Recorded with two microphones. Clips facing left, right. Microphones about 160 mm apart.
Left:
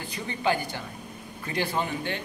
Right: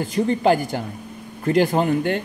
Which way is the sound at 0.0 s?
45° right (ahead or behind).